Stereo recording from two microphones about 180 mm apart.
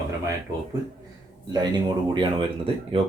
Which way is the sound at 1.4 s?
25° right (ahead or behind).